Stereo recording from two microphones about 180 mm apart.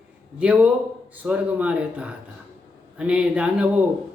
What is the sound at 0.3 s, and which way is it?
A man's voice, 5° right (ahead or behind).